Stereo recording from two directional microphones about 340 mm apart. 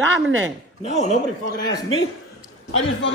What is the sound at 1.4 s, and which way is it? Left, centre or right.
Speech, left.